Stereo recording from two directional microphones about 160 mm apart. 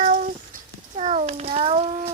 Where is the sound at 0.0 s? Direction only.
55° right (ahead or behind).